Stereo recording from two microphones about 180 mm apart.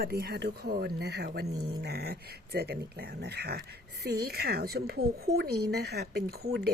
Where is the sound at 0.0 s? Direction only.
60° right (ahead or behind).